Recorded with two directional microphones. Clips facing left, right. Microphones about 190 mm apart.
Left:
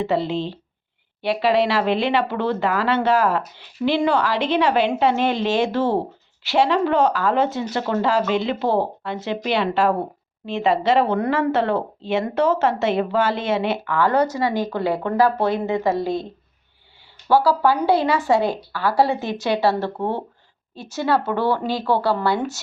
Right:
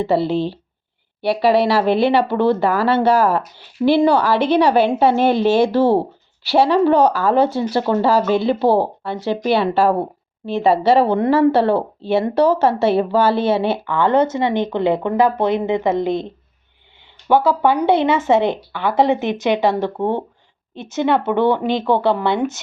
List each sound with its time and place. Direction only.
0.0 s speech: 35° right (ahead or behind); by 16.2 s 20° right (ahead or behind)
17.2 s speech: 20° right (ahead or behind)